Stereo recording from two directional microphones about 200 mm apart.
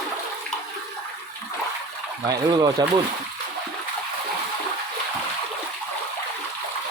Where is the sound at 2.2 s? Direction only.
20° right (ahead or behind).